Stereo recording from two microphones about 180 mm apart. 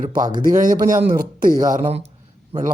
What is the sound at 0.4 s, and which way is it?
Speech, 50° right (ahead or behind).